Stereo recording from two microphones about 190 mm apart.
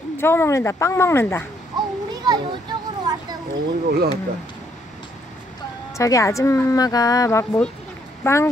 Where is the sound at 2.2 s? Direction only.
25° right (ahead or behind).